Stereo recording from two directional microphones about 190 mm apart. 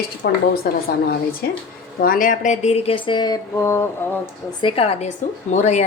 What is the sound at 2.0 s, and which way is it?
A woman's voice, 45° left (ahead or behind).